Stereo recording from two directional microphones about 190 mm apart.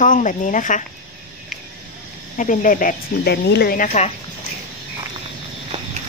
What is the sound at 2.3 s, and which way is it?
A woman's voice, 40° left (ahead or behind).